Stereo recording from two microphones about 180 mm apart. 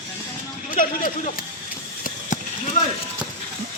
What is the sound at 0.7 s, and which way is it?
Speech, 50° left (ahead or behind).